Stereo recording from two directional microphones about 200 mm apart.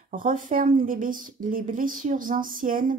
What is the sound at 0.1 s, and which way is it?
A woman's voice, 40° right (ahead or behind).